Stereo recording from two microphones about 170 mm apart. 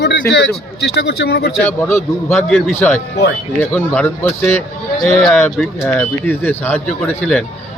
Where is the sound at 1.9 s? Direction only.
15° left (ahead or behind).